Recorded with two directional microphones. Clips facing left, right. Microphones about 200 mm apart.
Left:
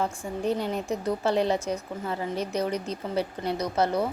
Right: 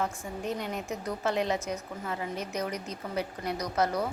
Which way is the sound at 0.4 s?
30° left (ahead or behind).